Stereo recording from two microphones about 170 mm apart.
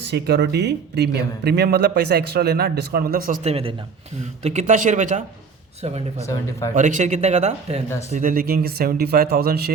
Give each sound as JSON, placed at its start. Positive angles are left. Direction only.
{"t": 0.1, "sound": "speech", "side_deg": -85}
{"t": 3.4, "sound": "a man's voice", "side_deg": -35}
{"t": 8.1, "sound": "speech", "side_deg": -55}